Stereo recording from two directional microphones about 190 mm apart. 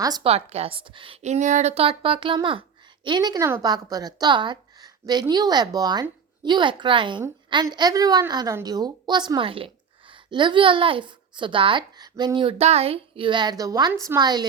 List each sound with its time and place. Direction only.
0.0 s a woman's voice: 20° right (ahead or behind)
0.3 s a woman's voice: 35° right (ahead or behind)